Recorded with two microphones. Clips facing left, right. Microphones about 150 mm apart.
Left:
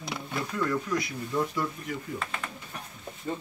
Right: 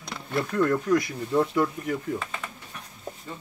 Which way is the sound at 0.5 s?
55° right (ahead or behind).